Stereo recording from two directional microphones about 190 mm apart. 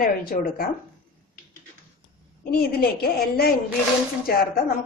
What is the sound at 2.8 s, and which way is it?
A woman's voice, 55° left (ahead or behind).